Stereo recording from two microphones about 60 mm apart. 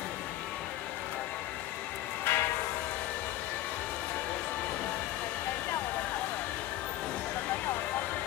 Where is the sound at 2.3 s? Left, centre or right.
Left.